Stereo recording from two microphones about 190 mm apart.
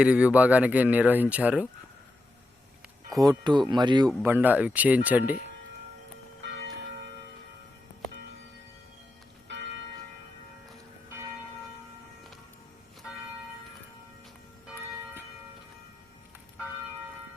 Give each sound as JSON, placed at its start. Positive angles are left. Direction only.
{"t": 0.0, "sound": "speech", "side_deg": -5}
{"t": 3.2, "sound": "speech", "side_deg": -20}
{"t": 6.4, "sound": "church bell", "side_deg": -60}
{"t": 9.5, "sound": "church bell", "side_deg": -70}